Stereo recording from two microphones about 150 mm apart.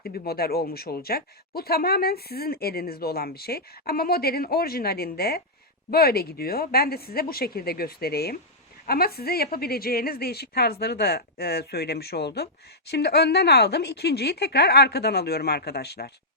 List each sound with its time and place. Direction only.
0.0 s speech: 90° left